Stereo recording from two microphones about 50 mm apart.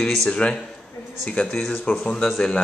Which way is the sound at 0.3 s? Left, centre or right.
Centre.